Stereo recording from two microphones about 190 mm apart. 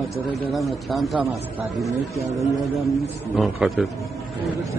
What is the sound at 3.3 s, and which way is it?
Speech, centre (ahead or behind).